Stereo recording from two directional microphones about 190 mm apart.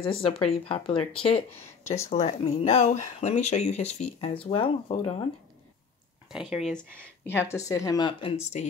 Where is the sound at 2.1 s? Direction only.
35° left (ahead or behind).